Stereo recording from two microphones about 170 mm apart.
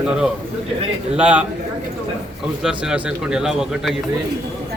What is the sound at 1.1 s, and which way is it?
Speech, 5° right (ahead or behind).